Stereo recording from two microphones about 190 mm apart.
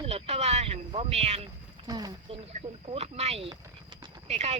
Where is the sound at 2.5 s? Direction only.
35° right (ahead or behind).